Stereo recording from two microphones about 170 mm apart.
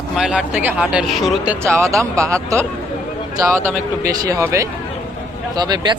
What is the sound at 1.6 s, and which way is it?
Speech, 15° right (ahead or behind).